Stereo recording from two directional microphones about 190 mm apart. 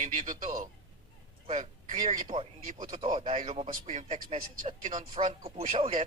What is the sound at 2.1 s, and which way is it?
Speech, 45° right (ahead or behind).